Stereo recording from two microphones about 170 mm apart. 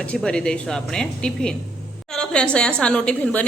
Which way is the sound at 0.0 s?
5° left (ahead or behind).